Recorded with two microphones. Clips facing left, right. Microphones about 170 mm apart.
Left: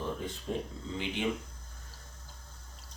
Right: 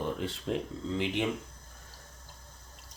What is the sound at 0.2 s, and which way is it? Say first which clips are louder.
Speech: right 3 dB; 90° right.